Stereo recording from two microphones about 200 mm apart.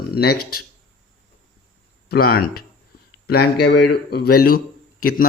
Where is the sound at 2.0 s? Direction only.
50° left (ahead or behind).